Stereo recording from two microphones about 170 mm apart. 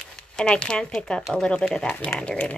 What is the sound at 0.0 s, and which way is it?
Speech, 5° left (ahead or behind).